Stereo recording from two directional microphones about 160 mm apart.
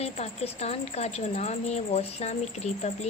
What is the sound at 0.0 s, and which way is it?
A woman's voice, 40° left (ahead or behind).